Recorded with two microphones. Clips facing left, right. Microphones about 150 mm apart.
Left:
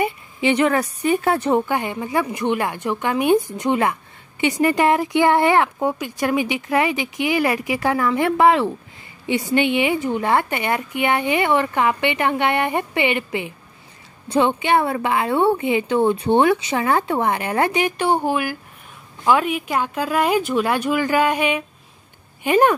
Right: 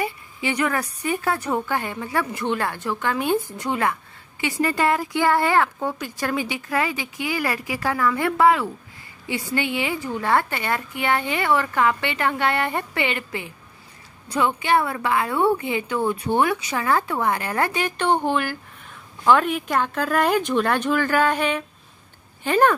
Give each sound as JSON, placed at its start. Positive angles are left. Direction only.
{"t": 0.0, "sound": "a woman's voice", "side_deg": 20}